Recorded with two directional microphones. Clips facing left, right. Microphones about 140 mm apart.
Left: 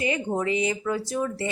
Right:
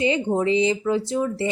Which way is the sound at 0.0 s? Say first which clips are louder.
Right 5 dB; 25° right (ahead or behind).